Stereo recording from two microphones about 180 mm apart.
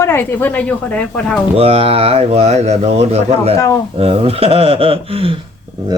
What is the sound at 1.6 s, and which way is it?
Speech, 35° right (ahead or behind).